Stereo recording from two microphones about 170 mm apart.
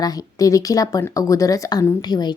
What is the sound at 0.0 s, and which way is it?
Speech, 20° left (ahead or behind).